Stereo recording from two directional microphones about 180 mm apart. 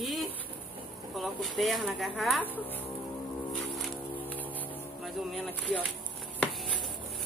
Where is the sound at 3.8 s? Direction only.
10° left (ahead or behind).